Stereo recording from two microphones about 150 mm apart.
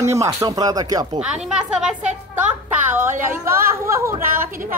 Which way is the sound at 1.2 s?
5° right (ahead or behind).